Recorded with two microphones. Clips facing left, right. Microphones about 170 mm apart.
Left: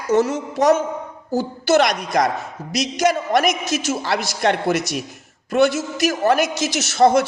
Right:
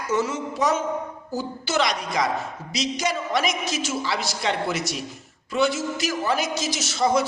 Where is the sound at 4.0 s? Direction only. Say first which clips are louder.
Left 6 dB; 60° left (ahead or behind).